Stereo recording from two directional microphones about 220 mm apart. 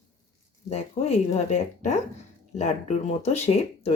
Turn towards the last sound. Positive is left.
turn(degrees=30)  # may be behind; listen again after turning